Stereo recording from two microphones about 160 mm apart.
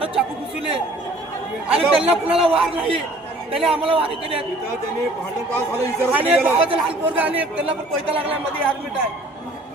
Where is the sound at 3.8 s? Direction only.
35° right (ahead or behind).